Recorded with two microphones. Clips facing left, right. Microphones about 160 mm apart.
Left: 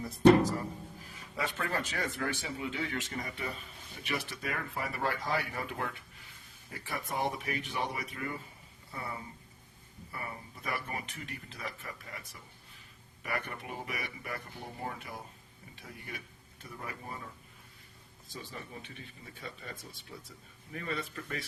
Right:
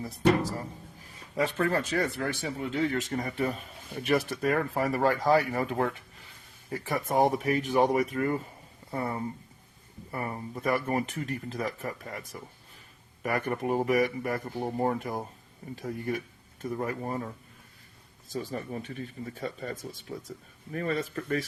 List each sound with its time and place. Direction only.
1.1 s speech: 40° right (ahead or behind)
18.3 s speech: 45° right (ahead or behind)